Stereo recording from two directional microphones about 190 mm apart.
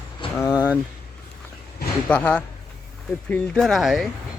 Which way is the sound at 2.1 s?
5° left (ahead or behind).